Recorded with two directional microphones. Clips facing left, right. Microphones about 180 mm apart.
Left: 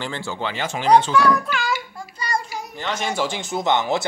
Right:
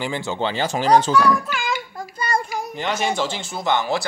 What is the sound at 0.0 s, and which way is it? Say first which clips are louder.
Speech: right 4 dB; 15° right (ahead or behind).